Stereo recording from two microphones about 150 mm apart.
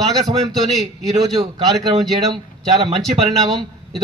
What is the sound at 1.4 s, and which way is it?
Speech, 25° right (ahead or behind).